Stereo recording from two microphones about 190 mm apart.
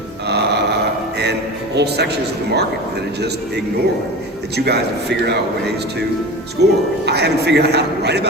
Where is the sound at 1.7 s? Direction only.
60° right (ahead or behind).